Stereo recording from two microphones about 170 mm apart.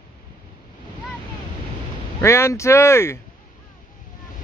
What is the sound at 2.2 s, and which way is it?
Speech, 15° left (ahead or behind).